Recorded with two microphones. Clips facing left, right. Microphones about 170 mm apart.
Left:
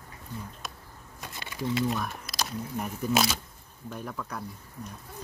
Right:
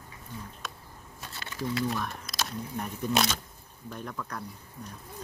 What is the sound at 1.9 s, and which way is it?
Speech, 5° left (ahead or behind).